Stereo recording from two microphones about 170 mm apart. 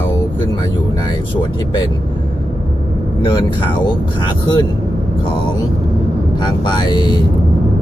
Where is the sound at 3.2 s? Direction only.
25° left (ahead or behind).